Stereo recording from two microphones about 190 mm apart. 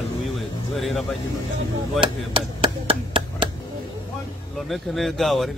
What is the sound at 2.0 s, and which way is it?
Speech, 25° right (ahead or behind).